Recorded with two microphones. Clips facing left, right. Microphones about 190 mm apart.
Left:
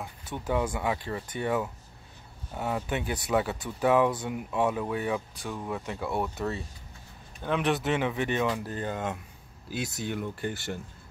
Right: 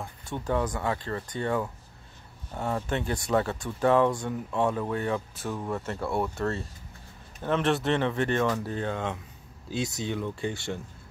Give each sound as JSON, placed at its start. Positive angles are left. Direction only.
{"t": 0.0, "sound": "speech", "side_deg": 5}
{"t": 5.3, "sound": "speech", "side_deg": -5}
{"t": 9.7, "sound": "speech", "side_deg": -25}
{"t": 10.1, "sound": "speech", "side_deg": 5}